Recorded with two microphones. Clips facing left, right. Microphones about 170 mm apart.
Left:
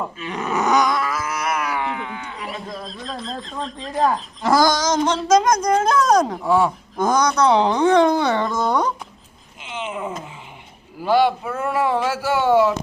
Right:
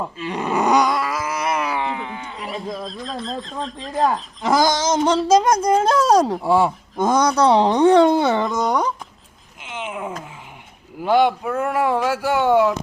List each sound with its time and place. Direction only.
0.2 s groan: 30° right (ahead or behind)
1.2 s a sound: 30° right (ahead or behind)
2.3 s speech: centre (ahead or behind)
4.4 s speech: 15° right (ahead or behind)
5.0 s speech: 30° right (ahead or behind)
9.7 s a sound: 10° right (ahead or behind)
11.0 s speech: 20° right (ahead or behind)